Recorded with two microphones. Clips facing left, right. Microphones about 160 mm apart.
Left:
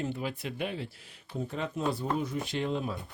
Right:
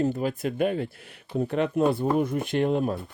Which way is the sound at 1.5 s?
65° right (ahead or behind).